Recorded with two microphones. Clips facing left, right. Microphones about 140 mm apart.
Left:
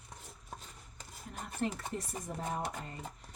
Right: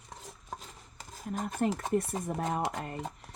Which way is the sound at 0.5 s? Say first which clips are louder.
Right 3 dB; 90° right.